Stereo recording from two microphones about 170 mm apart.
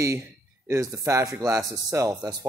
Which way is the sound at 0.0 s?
15° right (ahead or behind).